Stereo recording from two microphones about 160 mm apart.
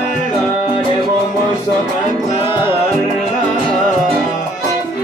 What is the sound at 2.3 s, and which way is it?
Music, 35° left (ahead or behind).